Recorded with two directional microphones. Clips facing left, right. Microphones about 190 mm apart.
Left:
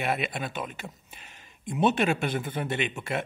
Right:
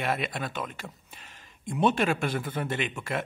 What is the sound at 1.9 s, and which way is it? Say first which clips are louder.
Speech: even; 25° left (ahead or behind).